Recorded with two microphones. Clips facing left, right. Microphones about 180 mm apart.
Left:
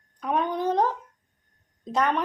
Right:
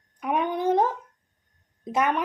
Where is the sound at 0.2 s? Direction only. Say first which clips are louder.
Even; 15° right (ahead or behind).